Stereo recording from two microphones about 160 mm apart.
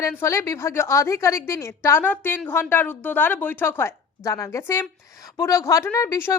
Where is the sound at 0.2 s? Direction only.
15° left (ahead or behind).